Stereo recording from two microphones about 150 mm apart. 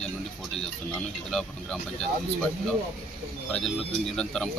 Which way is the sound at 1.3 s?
5° left (ahead or behind).